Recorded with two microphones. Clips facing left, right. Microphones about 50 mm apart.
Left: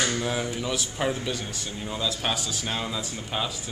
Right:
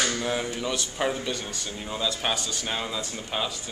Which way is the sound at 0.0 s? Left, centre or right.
Centre.